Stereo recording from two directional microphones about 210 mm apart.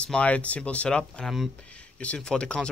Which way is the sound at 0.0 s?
5° left (ahead or behind).